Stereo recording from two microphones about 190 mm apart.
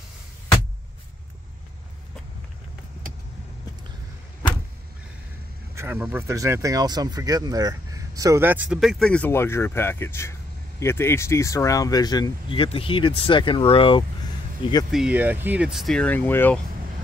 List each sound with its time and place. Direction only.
5.8 s speech: 10° right (ahead or behind); by 14.0 s 30° left (ahead or behind)
14.9 s speech: 5° right (ahead or behind)